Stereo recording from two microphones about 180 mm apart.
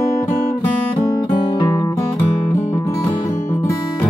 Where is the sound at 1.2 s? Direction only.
25° left (ahead or behind).